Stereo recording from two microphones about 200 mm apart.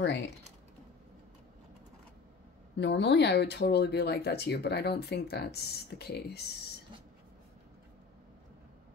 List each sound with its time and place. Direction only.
0.0 s speech: 60° left (ahead or behind)
2.8 s speech: 60° left (ahead or behind)